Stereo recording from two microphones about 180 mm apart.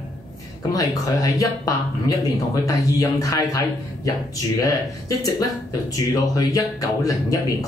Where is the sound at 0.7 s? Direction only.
20° left (ahead or behind).